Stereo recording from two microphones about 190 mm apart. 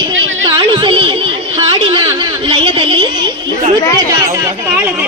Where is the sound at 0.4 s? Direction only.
25° right (ahead or behind).